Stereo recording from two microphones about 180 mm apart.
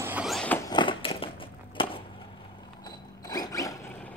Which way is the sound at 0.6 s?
25° left (ahead or behind).